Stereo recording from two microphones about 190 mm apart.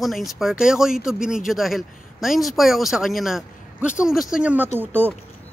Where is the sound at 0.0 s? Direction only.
Centre (ahead or behind).